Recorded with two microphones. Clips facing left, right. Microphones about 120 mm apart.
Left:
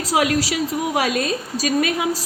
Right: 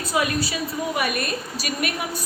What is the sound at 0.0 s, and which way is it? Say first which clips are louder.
A woman's voice: left 4 dB; 90° left.